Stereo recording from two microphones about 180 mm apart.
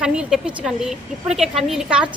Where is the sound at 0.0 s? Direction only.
5° right (ahead or behind).